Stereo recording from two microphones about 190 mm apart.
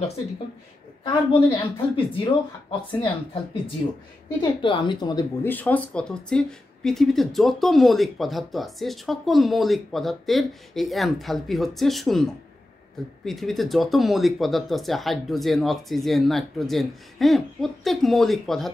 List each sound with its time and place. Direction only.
1.0 s a woman's voice: 25° left (ahead or behind)
4.4 s a woman's voice: 25° left (ahead or behind)
5.4 s speech: 10° left (ahead or behind)